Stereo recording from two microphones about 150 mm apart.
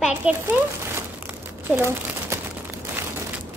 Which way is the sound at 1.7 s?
15° right (ahead or behind).